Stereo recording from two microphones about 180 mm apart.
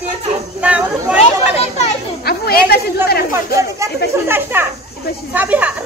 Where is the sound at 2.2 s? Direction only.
60° left (ahead or behind).